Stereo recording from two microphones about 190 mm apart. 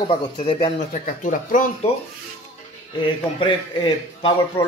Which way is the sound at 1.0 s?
45° left (ahead or behind).